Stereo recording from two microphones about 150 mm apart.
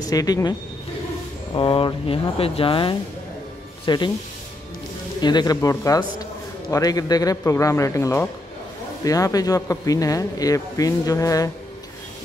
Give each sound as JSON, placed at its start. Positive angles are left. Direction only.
{"t": 0.0, "sound": "speech", "side_deg": 25}
{"t": 5.2, "sound": "speech", "side_deg": 30}